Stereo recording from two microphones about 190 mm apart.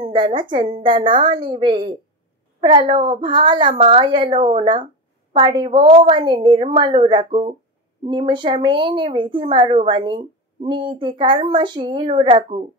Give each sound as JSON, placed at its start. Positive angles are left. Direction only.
{"t": 0.0, "sound": "a woman's voice", "side_deg": -25}